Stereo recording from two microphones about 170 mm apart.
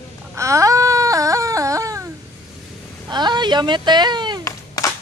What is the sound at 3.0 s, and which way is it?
Speech, 25° right (ahead or behind).